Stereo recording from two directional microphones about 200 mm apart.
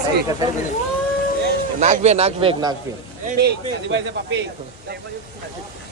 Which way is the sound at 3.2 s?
55° right (ahead or behind).